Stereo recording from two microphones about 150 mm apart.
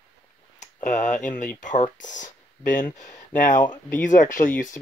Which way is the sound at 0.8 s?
55° left (ahead or behind).